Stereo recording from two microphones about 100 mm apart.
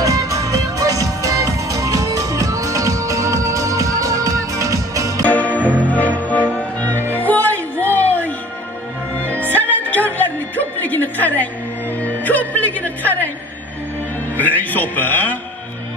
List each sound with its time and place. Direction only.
0.0 s music: 35° right (ahead or behind)
5.2 s music: 15° left (ahead or behind)
14.3 s music: 15° left (ahead or behind)